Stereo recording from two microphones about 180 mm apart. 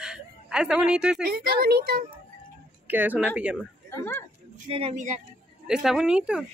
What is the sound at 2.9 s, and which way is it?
Speech, 10° right (ahead or behind).